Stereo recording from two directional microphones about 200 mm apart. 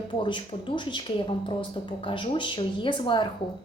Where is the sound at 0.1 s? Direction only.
25° left (ahead or behind).